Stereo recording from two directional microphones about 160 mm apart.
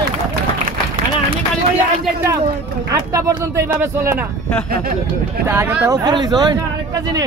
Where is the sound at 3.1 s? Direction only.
20° right (ahead or behind).